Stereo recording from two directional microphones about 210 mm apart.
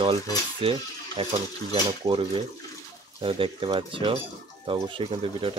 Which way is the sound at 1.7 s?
25° right (ahead or behind).